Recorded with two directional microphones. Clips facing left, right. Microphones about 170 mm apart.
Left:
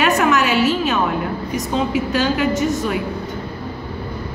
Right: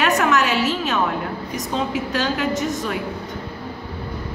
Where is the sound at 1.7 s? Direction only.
5° left (ahead or behind).